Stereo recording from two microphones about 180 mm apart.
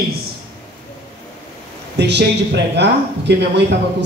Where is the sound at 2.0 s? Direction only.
70° right (ahead or behind).